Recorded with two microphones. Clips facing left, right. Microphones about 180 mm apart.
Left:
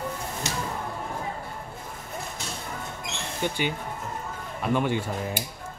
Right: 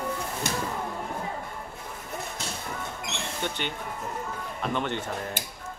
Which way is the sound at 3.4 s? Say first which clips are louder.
Left 6 dB; 10° left (ahead or behind).